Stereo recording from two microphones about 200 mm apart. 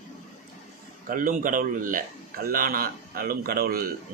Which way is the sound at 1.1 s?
45° right (ahead or behind).